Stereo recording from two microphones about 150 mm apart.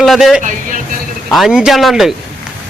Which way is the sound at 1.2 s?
Centre (ahead or behind).